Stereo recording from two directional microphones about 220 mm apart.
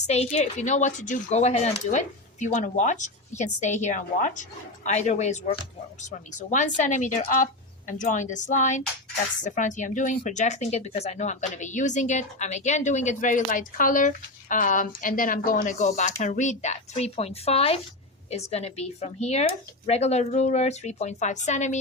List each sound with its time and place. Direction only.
0.1 s a woman's voice: 30° left (ahead or behind)